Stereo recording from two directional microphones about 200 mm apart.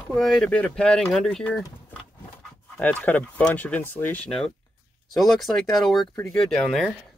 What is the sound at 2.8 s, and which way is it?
Speech, 5° left (ahead or behind).